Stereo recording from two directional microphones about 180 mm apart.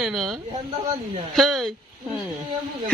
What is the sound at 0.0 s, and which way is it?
A woman's voice, centre (ahead or behind).